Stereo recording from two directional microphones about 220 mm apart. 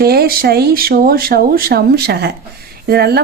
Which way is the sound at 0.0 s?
45° right (ahead or behind).